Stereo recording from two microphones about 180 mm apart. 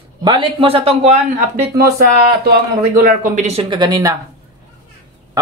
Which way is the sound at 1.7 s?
55° right (ahead or behind).